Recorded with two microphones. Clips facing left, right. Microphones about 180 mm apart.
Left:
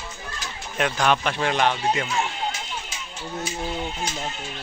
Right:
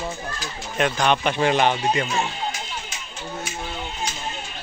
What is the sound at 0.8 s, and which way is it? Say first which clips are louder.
Speech: right 1 dB; centre (ahead or behind).